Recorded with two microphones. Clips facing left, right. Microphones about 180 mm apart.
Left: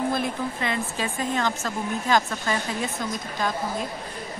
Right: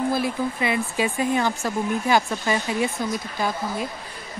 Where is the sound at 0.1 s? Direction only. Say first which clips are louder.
Right 3 dB; 5° right (ahead or behind).